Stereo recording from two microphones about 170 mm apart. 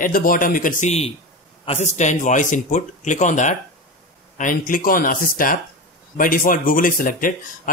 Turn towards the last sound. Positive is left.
turn(degrees=55)  # may be behind; listen again after turning